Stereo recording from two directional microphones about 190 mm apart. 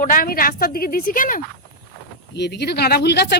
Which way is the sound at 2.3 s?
60° left (ahead or behind).